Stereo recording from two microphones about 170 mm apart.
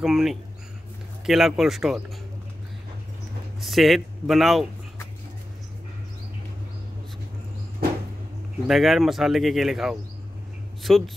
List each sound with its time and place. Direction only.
0.0 s speech: centre (ahead or behind)
3.6 s speech: centre (ahead or behind)
8.6 s speech: centre (ahead or behind)